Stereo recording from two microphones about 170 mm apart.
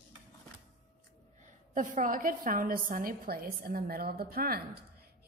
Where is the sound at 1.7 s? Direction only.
50° right (ahead or behind).